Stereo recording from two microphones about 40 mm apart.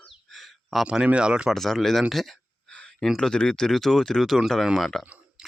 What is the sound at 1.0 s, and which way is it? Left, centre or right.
Speech, right.